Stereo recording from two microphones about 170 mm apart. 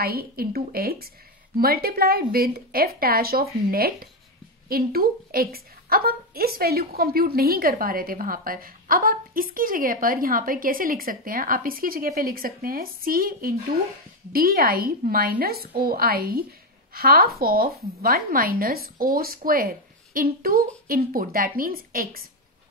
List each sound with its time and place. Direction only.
0.0 s a woman's voice: 60° right (ahead or behind)